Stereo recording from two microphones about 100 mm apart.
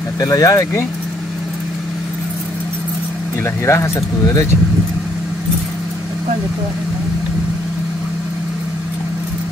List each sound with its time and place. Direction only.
0.2 s speech: 30° left (ahead or behind)
3.6 s speech: 30° left (ahead or behind)